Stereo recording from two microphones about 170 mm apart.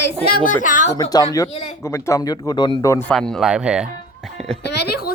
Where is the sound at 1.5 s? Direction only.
40° left (ahead or behind).